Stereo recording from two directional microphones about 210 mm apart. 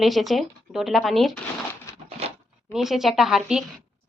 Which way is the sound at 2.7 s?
Centre (ahead or behind).